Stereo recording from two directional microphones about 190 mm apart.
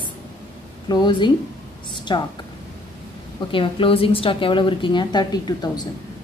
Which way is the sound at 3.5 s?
25° left (ahead or behind).